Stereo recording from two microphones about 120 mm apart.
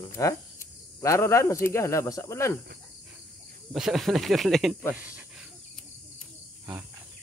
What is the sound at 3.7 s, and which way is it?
Speech, 5° right (ahead or behind).